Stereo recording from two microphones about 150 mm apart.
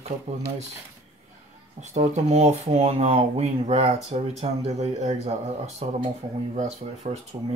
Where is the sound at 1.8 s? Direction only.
50° right (ahead or behind).